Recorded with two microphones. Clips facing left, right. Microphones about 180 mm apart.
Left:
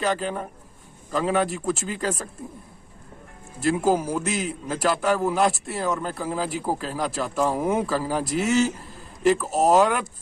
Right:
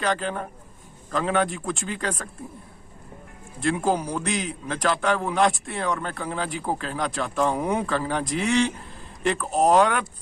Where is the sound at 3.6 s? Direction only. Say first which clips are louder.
Left 2 dB; 5° left (ahead or behind).